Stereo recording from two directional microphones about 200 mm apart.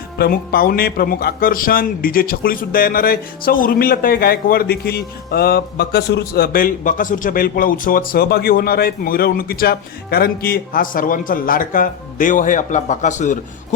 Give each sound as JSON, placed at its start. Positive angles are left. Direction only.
{"t": 0.2, "sound": "speech", "side_deg": 50}